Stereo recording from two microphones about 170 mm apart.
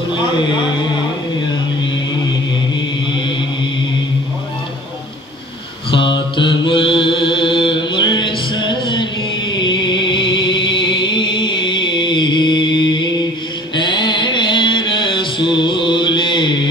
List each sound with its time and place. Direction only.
5.9 s mantra: 30° left (ahead or behind)
9.6 s music: 25° left (ahead or behind)
13.7 s mantra: 25° left (ahead or behind)